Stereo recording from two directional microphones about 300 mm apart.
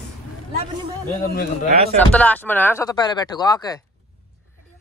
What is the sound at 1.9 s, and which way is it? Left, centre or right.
Speech, centre.